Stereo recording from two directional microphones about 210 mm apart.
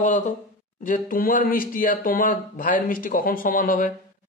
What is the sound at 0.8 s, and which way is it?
A woman's voice, 40° left (ahead or behind).